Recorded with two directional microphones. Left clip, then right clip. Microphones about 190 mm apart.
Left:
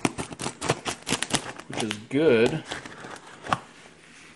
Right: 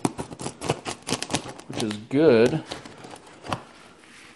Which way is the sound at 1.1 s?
20° right (ahead or behind).